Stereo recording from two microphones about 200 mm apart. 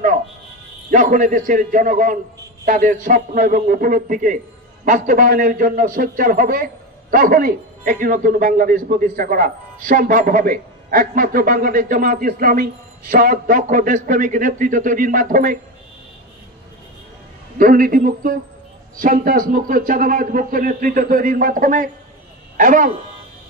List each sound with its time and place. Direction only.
0.8 s a man's voice: 40° right (ahead or behind)
17.6 s a man's voice: 45° right (ahead or behind)